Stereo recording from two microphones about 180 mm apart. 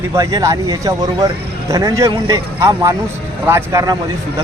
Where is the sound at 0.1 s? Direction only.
20° right (ahead or behind).